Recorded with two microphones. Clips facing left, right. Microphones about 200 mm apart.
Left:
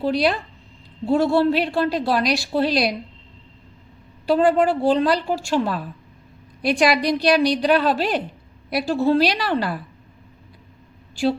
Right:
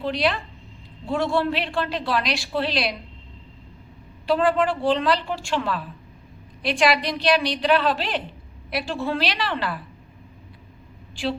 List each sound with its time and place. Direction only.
0.0 s a woman's voice: 40° left (ahead or behind)
4.3 s a woman's voice: 40° left (ahead or behind)
11.1 s a woman's voice: 40° left (ahead or behind)